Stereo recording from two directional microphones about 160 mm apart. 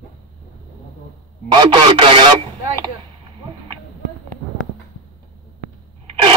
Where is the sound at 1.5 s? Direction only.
30° right (ahead or behind).